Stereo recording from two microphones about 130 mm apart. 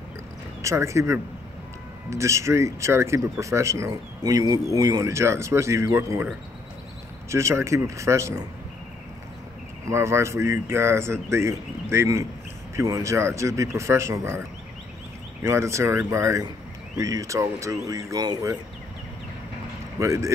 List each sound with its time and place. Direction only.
0.6 s speech: 25° right (ahead or behind)
7.2 s speech: 20° right (ahead or behind)
9.8 s speech: 20° right (ahead or behind)
15.4 s speech: 20° right (ahead or behind)
20.0 s speech: 25° right (ahead or behind)